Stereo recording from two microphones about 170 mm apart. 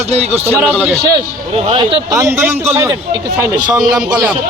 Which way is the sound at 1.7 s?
25° right (ahead or behind).